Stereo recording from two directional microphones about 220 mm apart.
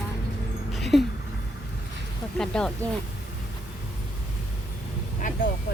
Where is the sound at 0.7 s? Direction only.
Centre (ahead or behind).